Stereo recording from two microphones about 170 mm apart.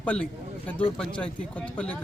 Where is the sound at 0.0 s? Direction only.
5° left (ahead or behind).